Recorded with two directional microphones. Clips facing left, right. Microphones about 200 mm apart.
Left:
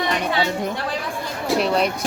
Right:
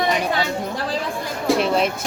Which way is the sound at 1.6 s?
Centre (ahead or behind).